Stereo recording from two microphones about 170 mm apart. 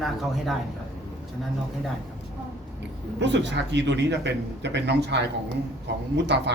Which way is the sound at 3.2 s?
90° right.